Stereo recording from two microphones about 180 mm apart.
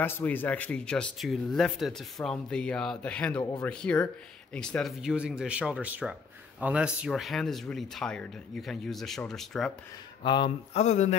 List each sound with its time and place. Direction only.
0.0 s speech: 10° left (ahead or behind)
10.2 s speech: 25° left (ahead or behind)